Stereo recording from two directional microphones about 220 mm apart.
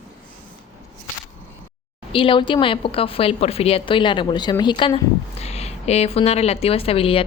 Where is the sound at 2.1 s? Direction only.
20° left (ahead or behind).